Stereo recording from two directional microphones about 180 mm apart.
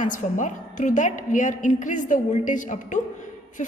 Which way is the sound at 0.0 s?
45° left (ahead or behind).